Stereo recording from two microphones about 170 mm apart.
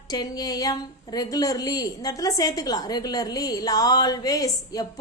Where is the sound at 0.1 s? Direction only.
25° left (ahead or behind).